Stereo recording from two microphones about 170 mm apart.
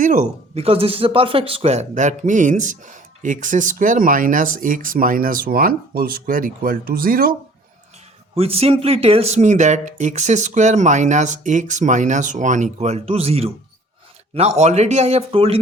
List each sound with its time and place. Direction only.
0.0 s speech: 50° right (ahead or behind)
0.5 s speech: 35° right (ahead or behind); by 7.3 s 60° right (ahead or behind)
8.4 s a man's voice: 35° right (ahead or behind)